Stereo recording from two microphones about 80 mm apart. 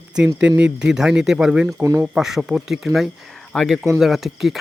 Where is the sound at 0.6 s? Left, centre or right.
Centre.